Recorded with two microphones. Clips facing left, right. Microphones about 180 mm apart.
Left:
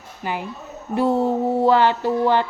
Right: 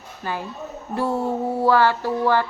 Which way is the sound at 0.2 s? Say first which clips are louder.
Left 2 dB; 20° left (ahead or behind).